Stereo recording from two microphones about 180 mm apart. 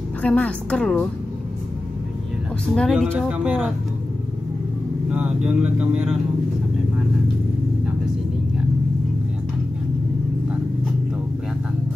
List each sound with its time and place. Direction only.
0.2 s speech: 5° left (ahead or behind)
2.7 s speech: centre (ahead or behind)
5.1 s speech: 5° right (ahead or behind)